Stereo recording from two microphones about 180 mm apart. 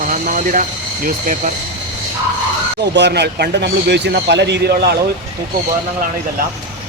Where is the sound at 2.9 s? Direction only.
70° right (ahead or behind).